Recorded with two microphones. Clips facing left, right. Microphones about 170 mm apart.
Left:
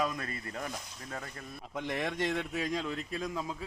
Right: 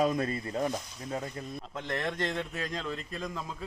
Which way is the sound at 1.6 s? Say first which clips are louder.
Left 1 dB; 10° left (ahead or behind).